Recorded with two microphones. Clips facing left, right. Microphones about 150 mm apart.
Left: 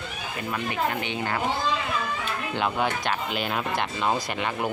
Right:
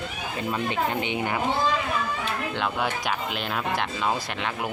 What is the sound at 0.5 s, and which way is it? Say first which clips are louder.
Speech: right 1 dB; 20° right (ahead or behind).